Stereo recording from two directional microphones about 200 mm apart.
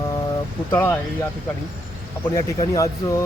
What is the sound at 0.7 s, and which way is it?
Speech, 10° left (ahead or behind).